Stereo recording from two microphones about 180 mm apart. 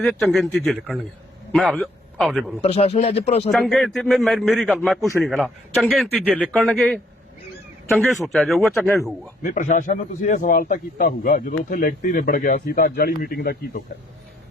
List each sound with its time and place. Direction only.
0.0 s a man's voice: centre (ahead or behind)
2.6 s speech: 35° left (ahead or behind)
3.5 s a man's voice: 5° left (ahead or behind)
9.4 s a man's voice: 45° left (ahead or behind)